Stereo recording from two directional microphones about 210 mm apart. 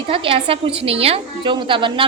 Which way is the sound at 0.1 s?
25° right (ahead or behind).